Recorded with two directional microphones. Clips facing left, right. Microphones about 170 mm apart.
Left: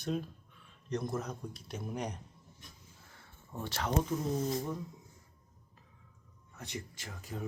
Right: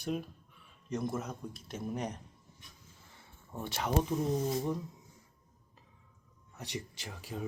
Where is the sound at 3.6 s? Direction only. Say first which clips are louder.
Right 1 dB; 20° right (ahead or behind).